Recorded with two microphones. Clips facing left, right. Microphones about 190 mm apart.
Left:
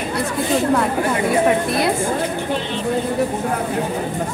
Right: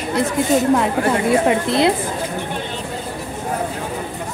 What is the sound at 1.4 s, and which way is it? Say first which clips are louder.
Speech: right 1 dB; 25° right (ahead or behind).